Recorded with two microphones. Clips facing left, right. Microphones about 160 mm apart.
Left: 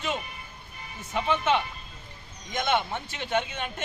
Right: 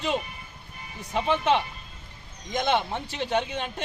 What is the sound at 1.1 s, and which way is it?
Speech, 35° right (ahead or behind).